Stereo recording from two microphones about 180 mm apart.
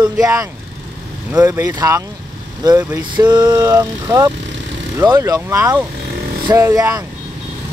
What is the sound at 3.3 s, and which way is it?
Speech, 10° right (ahead or behind).